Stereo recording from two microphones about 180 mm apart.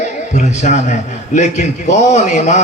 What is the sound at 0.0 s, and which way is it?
A man's voice, 40° left (ahead or behind).